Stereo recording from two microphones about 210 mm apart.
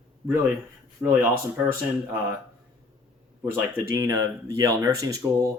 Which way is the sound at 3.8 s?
15° right (ahead or behind).